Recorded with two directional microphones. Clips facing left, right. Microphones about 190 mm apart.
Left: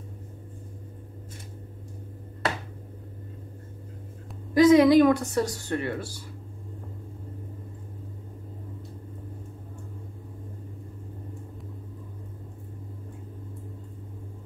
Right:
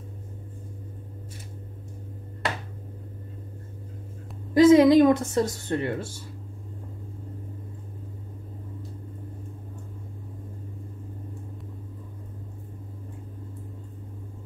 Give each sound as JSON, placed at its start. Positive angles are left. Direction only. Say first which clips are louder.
{"t": 4.6, "sound": "a woman's voice", "louder": "right 1 dB", "side_deg": -25}